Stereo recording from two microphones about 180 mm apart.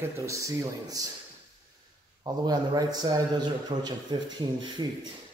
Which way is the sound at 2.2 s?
20° right (ahead or behind).